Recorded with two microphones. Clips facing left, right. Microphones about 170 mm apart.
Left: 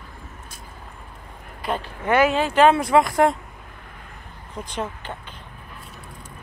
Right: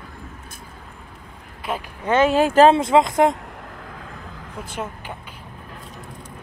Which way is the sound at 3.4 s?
75° right (ahead or behind).